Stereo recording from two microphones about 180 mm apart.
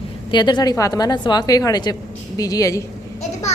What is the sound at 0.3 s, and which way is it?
A woman's voice, 25° left (ahead or behind).